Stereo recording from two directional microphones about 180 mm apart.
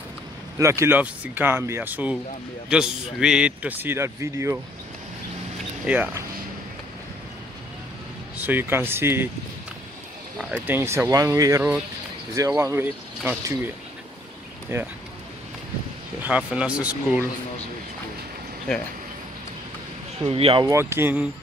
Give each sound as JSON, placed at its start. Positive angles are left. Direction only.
{"t": 0.6, "sound": "a man's voice", "side_deg": -15}
{"t": 5.9, "sound": "a man's voice", "side_deg": -10}
{"t": 8.4, "sound": "a man's voice", "side_deg": -10}
{"t": 10.5, "sound": "a man's voice", "side_deg": -10}
{"t": 14.7, "sound": "a man's voice", "side_deg": -15}
{"t": 16.2, "sound": "a man's voice", "side_deg": -5}
{"t": 20.2, "sound": "speech", "side_deg": -30}
{"t": 20.6, "sound": "a man's voice", "side_deg": -15}